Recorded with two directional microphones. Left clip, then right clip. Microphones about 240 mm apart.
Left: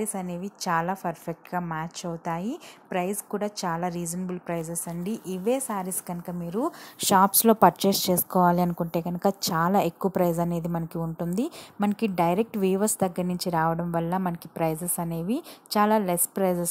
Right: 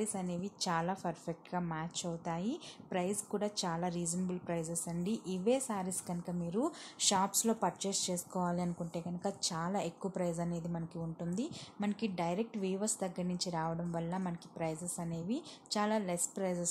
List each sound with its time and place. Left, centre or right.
0.0 s a woman's voice: centre
7.0 s a woman's voice: left